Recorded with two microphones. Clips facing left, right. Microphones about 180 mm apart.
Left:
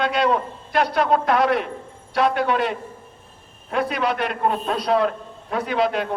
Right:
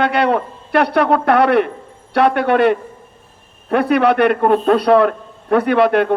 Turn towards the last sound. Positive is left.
turn(degrees=-60)  # may be behind; listen again after turning